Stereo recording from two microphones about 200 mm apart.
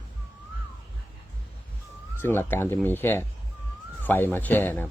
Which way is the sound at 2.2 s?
10° left (ahead or behind).